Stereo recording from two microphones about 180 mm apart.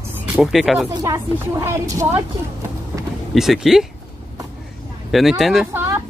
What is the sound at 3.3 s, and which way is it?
Speech, centre (ahead or behind).